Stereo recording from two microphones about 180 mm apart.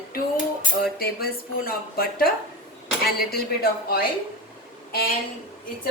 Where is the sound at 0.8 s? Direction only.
55° left (ahead or behind).